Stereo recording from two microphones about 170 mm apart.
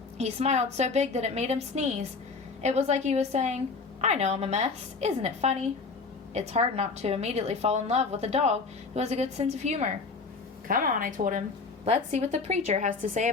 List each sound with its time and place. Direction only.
0.2 s a woman's voice: 40° right (ahead or behind)
10.7 s a woman's voice: 55° right (ahead or behind)